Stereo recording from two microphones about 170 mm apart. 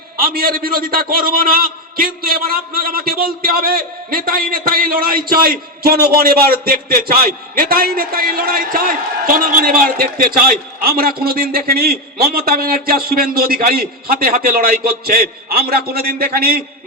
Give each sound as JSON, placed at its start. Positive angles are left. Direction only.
{"t": 0.2, "sound": "a man's voice", "side_deg": -60}